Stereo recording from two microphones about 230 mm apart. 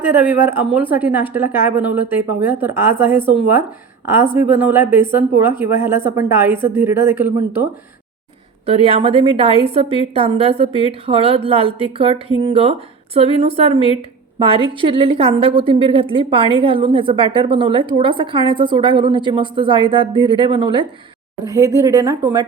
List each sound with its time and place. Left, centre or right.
0.1 s a woman's voice: centre
8.6 s a woman's voice: right